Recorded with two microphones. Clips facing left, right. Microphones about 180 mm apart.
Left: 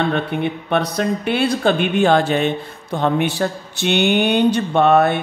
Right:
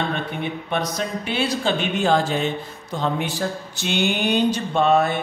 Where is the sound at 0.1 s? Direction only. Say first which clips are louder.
Left 6 dB; 60° left (ahead or behind).